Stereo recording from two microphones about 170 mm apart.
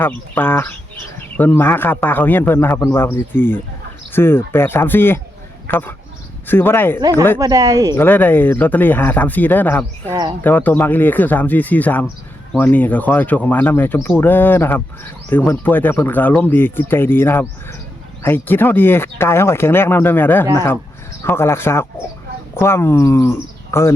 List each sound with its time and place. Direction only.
0.0 s speech: 10° left (ahead or behind)
7.0 s speech: 20° right (ahead or behind)
7.9 s speech: 10° left (ahead or behind)
10.1 s speech: 25° right (ahead or behind)
10.4 s speech: 10° left (ahead or behind)